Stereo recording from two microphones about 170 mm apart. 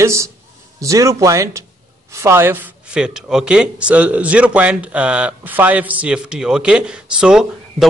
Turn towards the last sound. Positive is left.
turn(degrees=-5)  # may be behind; listen again after turning